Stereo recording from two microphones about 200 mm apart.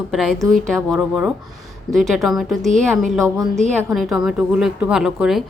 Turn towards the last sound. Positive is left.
turn(degrees=0)  # may be behind; listen again after turning